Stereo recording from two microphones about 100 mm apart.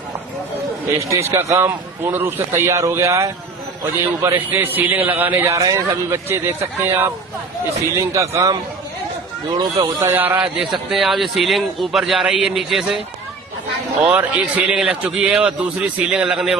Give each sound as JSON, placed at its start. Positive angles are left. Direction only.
{"t": 0.9, "sound": "a man's voice", "side_deg": -30}
{"t": 5.5, "sound": "a man's voice", "side_deg": -30}
{"t": 8.1, "sound": "a man's voice", "side_deg": -30}
{"t": 9.5, "sound": "a man's voice", "side_deg": -45}
{"t": 10.1, "sound": "a man's voice", "side_deg": -20}
{"t": 14.0, "sound": "a man's voice", "side_deg": -15}